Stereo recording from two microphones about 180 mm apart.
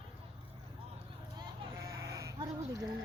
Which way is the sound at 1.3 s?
15° right (ahead or behind).